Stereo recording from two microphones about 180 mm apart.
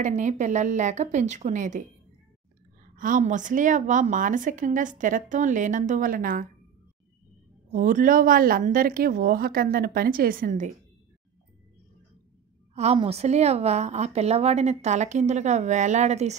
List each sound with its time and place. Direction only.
0.0 s a woman's voice: 40° right (ahead or behind)
3.0 s a woman's voice: 45° right (ahead or behind)
7.7 s a woman's voice: 50° right (ahead or behind)
12.7 s a woman's voice: 35° right (ahead or behind)